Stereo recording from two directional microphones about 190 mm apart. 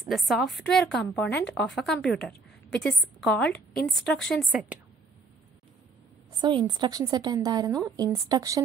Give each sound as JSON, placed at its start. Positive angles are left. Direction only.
{"t": 0.1, "sound": "a woman's voice", "side_deg": 0}
{"t": 6.4, "sound": "a woman's voice", "side_deg": -25}